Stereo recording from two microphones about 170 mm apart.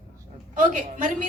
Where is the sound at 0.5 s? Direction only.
55° right (ahead or behind).